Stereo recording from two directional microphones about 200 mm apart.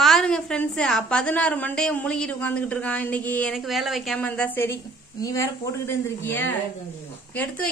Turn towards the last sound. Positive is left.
turn(degrees=5)  # may be behind; listen again after turning